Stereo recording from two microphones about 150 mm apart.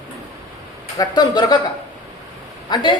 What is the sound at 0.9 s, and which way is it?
Speech, 25° left (ahead or behind).